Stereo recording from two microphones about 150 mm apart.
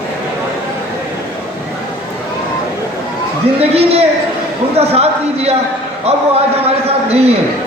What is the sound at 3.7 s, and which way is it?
Speech, 40° right (ahead or behind).